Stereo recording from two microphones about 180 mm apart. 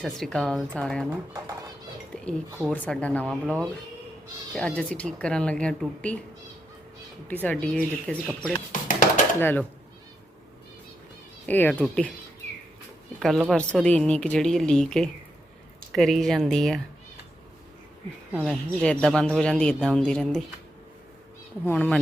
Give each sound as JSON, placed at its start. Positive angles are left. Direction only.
{"t": 0.0, "sound": "speech", "side_deg": 0}
{"t": 2.6, "sound": "speech", "side_deg": 5}
{"t": 7.3, "sound": "speech", "side_deg": 10}
{"t": 8.7, "sound": "a sound", "side_deg": 50}
{"t": 9.4, "sound": "speech", "side_deg": 10}
{"t": 11.4, "sound": "speech", "side_deg": 10}
{"t": 13.1, "sound": "speech", "side_deg": 0}
{"t": 18.4, "sound": "speech", "side_deg": 5}
{"t": 21.6, "sound": "speech", "side_deg": 5}